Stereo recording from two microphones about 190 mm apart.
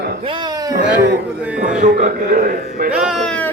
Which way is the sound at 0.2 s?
25° right (ahead or behind).